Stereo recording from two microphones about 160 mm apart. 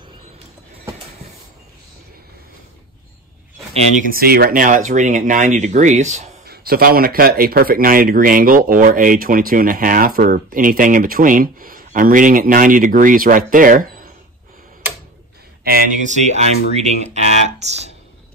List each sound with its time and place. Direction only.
4.1 s speech: 70° right (ahead or behind); by 6.3 s 45° right (ahead or behind)
6.4 s speech: 75° right (ahead or behind); by 13.8 s 60° right (ahead or behind)
15.6 s speech: 60° right (ahead or behind); by 17.9 s 45° right (ahead or behind)